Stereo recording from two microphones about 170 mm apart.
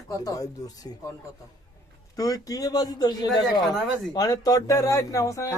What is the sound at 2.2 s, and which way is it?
Speech, 20° left (ahead or behind).